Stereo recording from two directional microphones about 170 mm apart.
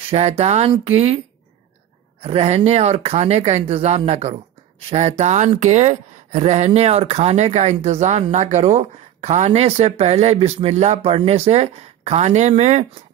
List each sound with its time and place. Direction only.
0.1 s speech: 35° right (ahead or behind)
2.2 s speech: 40° right (ahead or behind)